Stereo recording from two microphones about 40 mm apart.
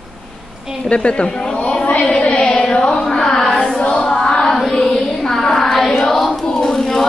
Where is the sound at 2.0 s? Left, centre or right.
Left.